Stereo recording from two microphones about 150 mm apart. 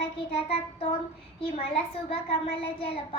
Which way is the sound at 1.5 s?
40° left (ahead or behind).